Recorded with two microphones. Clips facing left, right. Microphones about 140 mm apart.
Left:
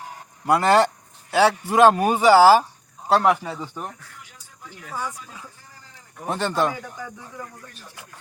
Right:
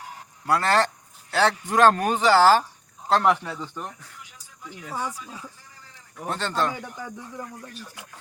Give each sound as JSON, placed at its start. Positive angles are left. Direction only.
{"t": 0.4, "sound": "speech", "side_deg": 15}
{"t": 4.9, "sound": "speech", "side_deg": -25}
{"t": 6.2, "sound": "speech", "side_deg": 15}
{"t": 7.3, "sound": "speech", "side_deg": -25}